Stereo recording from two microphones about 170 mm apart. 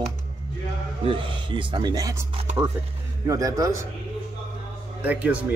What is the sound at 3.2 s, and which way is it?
Speech, 20° right (ahead or behind).